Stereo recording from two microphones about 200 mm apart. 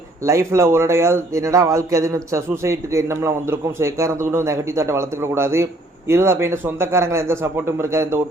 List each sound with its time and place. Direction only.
0.3 s a man's voice: 15° right (ahead or behind)